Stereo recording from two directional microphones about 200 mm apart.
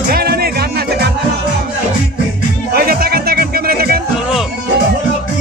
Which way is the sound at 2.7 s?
50° right (ahead or behind).